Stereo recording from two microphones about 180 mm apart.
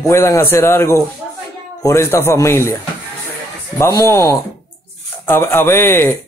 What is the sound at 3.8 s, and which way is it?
Speech, 15° left (ahead or behind).